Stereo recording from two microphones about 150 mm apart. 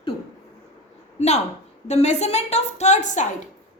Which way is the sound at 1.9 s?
45° left (ahead or behind).